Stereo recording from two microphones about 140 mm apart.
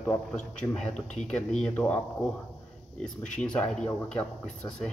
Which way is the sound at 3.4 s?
10° left (ahead or behind).